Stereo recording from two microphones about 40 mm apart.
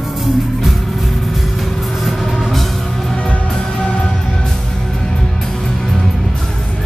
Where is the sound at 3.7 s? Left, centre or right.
Left.